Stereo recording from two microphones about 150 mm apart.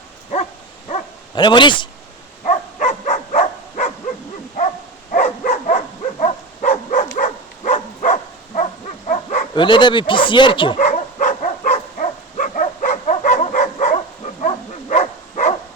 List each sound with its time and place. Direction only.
1.4 s speech: 30° left (ahead or behind)
2.4 s a sound: 50° left (ahead or behind)
5.1 s dog: 55° left (ahead or behind)
6.0 s dog: 40° left (ahead or behind)
6.7 s a sound: 55° left (ahead or behind)
9.0 s dog: 55° left (ahead or behind)
9.6 s speech: 30° left (ahead or behind)
10.8 s dog: 55° left (ahead or behind)